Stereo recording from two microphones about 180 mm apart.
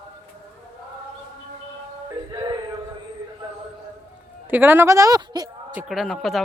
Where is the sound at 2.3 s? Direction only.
20° right (ahead or behind).